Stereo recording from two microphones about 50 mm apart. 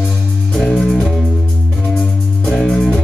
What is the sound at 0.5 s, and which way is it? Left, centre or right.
Music, centre.